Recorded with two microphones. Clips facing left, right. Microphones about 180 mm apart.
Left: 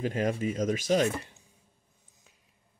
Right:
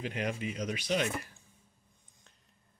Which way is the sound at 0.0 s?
40° left (ahead or behind).